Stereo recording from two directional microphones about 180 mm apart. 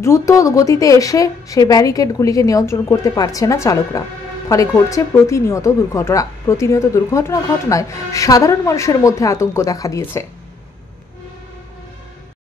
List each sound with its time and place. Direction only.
0.0 s a woman's voice: 15° left (ahead or behind)